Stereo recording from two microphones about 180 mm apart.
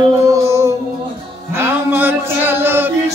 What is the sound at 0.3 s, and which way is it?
Music, 15° right (ahead or behind).